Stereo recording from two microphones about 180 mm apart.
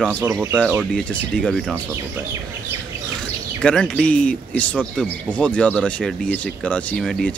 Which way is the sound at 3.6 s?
5° left (ahead or behind).